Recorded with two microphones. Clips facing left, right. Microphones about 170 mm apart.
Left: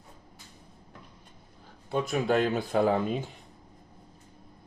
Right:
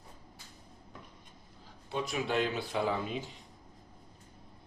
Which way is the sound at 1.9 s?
50° left (ahead or behind).